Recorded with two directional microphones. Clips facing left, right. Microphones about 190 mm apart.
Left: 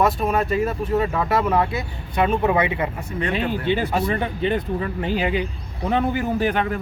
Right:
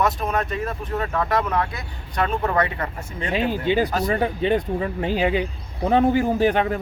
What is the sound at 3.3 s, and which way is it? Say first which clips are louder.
Speech: right 3 dB; 15° right (ahead or behind).